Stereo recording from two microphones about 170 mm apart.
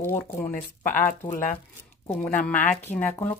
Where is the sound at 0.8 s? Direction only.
50° left (ahead or behind).